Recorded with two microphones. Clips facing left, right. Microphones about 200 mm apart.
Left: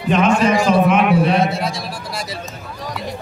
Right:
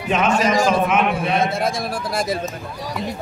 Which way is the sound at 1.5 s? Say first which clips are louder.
Right 2 dB; 50° right (ahead or behind).